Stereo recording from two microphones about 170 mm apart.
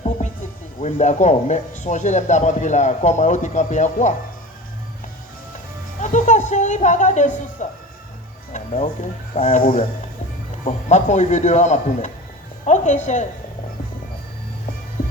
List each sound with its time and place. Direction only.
0.8 s speech: 45° left (ahead or behind)
6.0 s a sound: 45° left (ahead or behind)
8.5 s music: 45° left (ahead or behind)
9.3 s speech: 45° left (ahead or behind)